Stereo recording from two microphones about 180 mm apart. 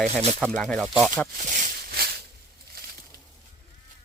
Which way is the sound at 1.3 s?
45° right (ahead or behind).